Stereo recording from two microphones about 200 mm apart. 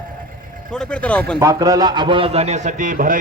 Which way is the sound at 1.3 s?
15° right (ahead or behind).